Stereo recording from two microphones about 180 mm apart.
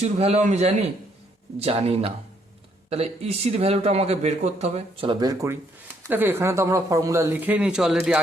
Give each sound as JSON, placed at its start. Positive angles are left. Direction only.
{"t": 0.0, "sound": "speech", "side_deg": -35}